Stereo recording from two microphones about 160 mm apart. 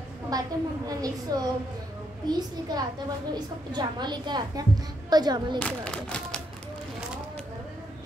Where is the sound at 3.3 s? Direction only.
25° right (ahead or behind).